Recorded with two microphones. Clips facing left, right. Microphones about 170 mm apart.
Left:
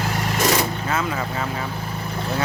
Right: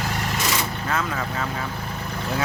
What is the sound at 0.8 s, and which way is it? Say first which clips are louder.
Speech: left 2 dB; 5° left (ahead or behind).